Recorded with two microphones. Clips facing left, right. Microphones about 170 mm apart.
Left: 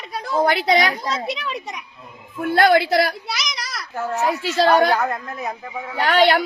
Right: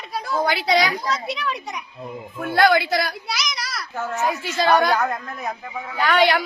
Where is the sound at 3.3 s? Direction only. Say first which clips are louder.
Even; centre (ahead or behind).